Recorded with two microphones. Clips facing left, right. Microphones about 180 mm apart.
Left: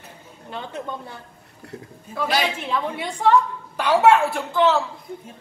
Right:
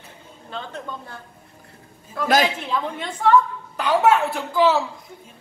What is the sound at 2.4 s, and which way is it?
Speech, centre (ahead or behind).